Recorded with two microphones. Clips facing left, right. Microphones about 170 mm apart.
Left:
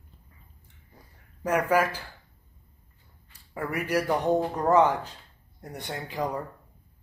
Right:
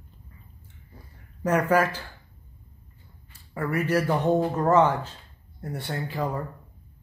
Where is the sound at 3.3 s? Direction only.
15° left (ahead or behind).